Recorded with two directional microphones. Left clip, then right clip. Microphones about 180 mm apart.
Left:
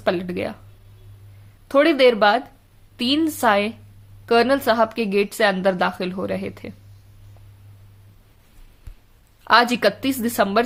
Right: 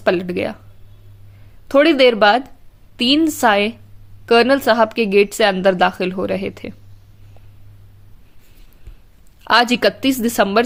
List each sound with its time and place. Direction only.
0.0 s a woman's voice: 30° right (ahead or behind)
1.6 s a woman's voice: 30° right (ahead or behind)
9.4 s a woman's voice: 30° right (ahead or behind)